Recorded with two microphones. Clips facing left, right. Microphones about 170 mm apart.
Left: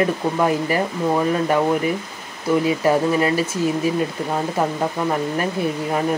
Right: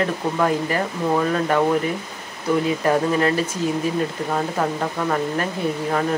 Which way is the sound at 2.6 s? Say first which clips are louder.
Left 2 dB; 10° left (ahead or behind).